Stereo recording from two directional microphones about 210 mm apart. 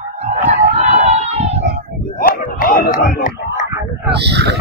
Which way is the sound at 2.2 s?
45° left (ahead or behind).